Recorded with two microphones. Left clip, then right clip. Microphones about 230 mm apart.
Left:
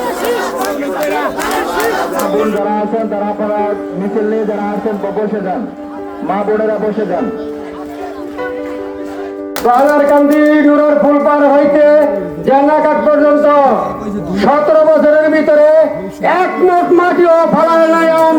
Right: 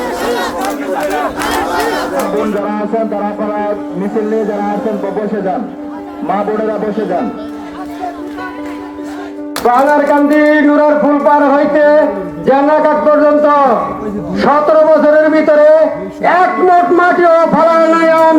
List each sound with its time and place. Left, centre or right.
6.2 s speech: right
9.6 s speech: centre